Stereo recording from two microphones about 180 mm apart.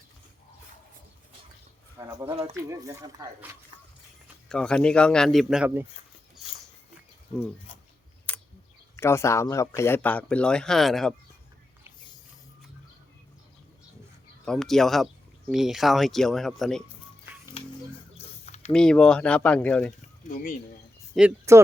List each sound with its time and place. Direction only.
2.0 s speech: 15° right (ahead or behind)
4.4 s speech: 5° left (ahead or behind)
8.3 s tick: 10° left (ahead or behind)
9.0 s a man's voice: 15° left (ahead or behind)
14.4 s speech: centre (ahead or behind)
18.4 s mechanisms: 35° left (ahead or behind)
18.7 s speech: 5° left (ahead or behind)
20.2 s speech: 50° left (ahead or behind)
21.2 s speech: 10° right (ahead or behind)